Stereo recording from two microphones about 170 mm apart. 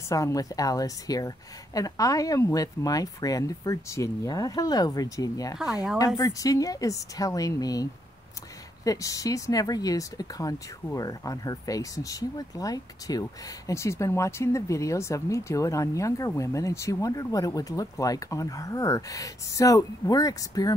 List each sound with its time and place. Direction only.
0.1 s speech: 20° left (ahead or behind)